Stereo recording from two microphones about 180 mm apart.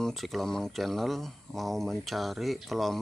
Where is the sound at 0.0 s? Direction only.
Centre (ahead or behind).